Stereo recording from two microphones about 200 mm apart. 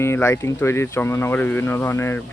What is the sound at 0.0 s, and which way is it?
Speech, 15° left (ahead or behind).